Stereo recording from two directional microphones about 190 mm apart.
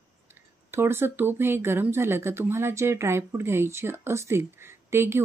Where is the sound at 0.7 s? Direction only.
10° right (ahead or behind).